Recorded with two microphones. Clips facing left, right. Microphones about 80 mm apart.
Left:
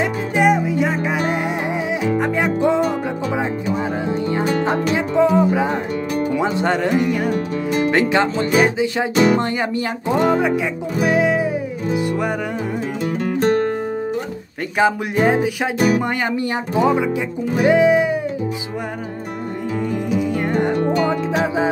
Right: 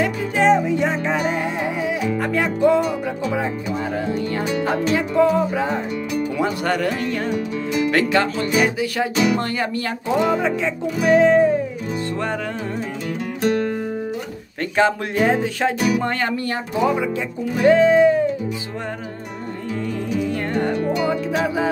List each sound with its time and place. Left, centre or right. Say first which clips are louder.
0.0 s music: left 1 dB; centre
1.9 s music: left 2 dB; centre
4.1 s music: left 3 dB; left
4.9 s speech: left 1 dB; left
7.3 s music: left 2 dB; left
7.9 s speech: left 1 dB; left
9.1 s speech: left 5 dB; left
9.4 s speech: left 2 dB; left
10.3 s music: left 2 dB; centre
13.2 s music: left 3 dB; left
14.8 s music: left 1 dB; centre
20.7 s music: left 3 dB; left
21.1 s speech: left 2 dB; left